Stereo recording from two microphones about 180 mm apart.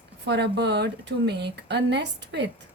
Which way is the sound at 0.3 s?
70° right (ahead or behind).